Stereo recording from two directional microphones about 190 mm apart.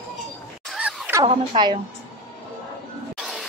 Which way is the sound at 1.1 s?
20° right (ahead or behind).